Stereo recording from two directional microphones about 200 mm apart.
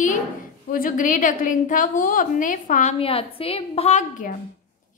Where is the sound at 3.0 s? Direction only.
30° left (ahead or behind).